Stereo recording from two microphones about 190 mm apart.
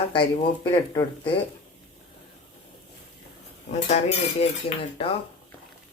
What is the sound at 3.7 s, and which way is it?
Dishes, 35° left (ahead or behind).